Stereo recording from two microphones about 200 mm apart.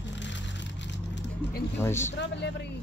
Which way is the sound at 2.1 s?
60° left (ahead or behind).